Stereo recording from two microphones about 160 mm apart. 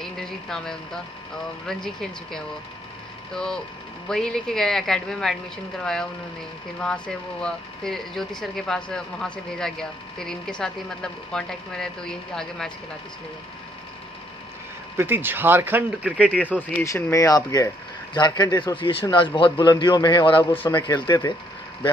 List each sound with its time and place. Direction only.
0.0 s speech: 5° left (ahead or behind)
4.1 s speech: 5° left (ahead or behind)
6.8 s speech: 5° left (ahead or behind)
15.0 s speech: 15° right (ahead or behind)
16.3 s speech: 10° left (ahead or behind); by 21.3 s 25° left (ahead or behind)